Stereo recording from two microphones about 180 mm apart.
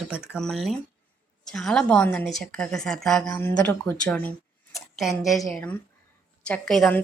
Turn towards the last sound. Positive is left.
turn(degrees=0)  # may be behind; listen again after turning